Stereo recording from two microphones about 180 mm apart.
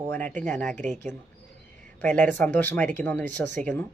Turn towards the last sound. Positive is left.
turn(degrees=5)  # may be behind; listen again after turning